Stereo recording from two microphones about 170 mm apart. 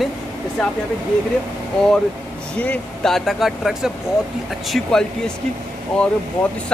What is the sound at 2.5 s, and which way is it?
Speech, 5° left (ahead or behind).